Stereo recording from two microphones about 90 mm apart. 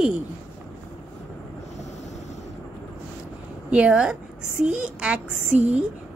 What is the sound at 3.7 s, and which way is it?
A woman's voice, 15° right (ahead or behind).